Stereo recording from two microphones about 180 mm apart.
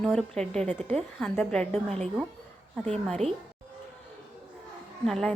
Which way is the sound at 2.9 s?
Centre (ahead or behind).